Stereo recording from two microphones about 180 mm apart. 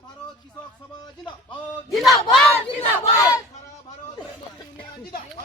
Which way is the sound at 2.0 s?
Centre (ahead or behind).